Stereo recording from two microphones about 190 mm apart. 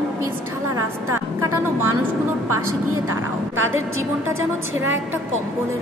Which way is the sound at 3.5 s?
90° right.